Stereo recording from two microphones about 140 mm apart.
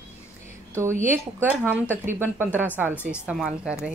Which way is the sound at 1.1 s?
10° right (ahead or behind).